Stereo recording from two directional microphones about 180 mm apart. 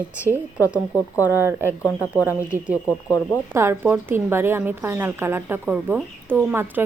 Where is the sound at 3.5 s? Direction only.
15° right (ahead or behind).